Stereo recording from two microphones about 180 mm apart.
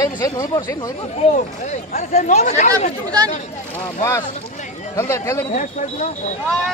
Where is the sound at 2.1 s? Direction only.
40° left (ahead or behind).